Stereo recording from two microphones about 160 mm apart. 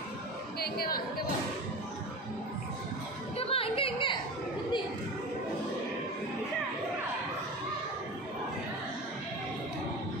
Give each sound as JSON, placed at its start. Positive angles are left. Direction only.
{"t": 0.6, "sound": "chatter", "side_deg": 70}
{"t": 3.3, "sound": "music", "side_deg": 35}